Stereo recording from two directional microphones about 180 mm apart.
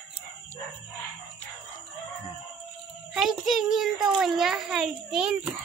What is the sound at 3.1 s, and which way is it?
A child's voice, centre (ahead or behind).